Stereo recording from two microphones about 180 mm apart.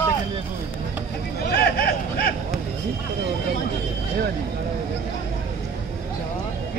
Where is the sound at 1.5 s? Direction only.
60° left (ahead or behind).